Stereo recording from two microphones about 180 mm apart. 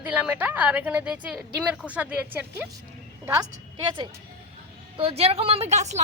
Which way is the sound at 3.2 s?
20° right (ahead or behind).